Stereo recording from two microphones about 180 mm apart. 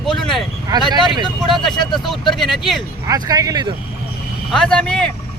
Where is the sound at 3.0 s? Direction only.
20° right (ahead or behind).